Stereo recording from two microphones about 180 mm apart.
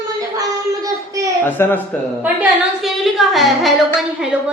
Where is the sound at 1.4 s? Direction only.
10° left (ahead or behind).